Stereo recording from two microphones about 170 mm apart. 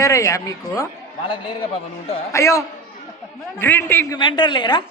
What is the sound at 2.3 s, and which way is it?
A man's voice, 20° left (ahead or behind).